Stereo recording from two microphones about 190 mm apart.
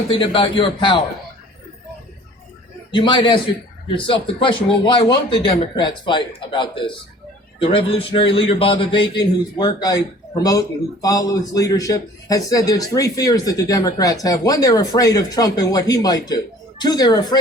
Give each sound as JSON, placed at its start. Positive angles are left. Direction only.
{"t": 0.1, "sound": "a man's voice", "side_deg": 30}
{"t": 2.9, "sound": "a man's voice", "side_deg": 25}